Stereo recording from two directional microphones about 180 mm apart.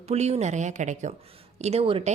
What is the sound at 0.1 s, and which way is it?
Speech, 35° right (ahead or behind).